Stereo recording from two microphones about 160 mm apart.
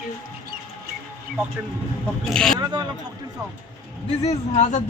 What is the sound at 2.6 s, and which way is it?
Speech, 30° right (ahead or behind).